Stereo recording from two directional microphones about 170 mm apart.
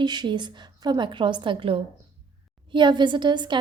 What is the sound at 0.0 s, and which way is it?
A woman's voice, 25° right (ahead or behind).